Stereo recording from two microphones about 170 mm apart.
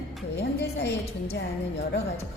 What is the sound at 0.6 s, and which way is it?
Speech, 80° left.